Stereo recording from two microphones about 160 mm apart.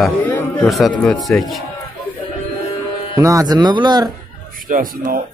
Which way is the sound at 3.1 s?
20° right (ahead or behind).